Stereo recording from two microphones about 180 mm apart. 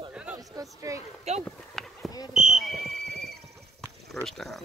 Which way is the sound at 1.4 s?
Centre (ahead or behind).